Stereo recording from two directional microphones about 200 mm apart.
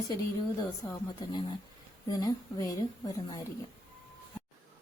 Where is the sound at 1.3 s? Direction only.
20° left (ahead or behind).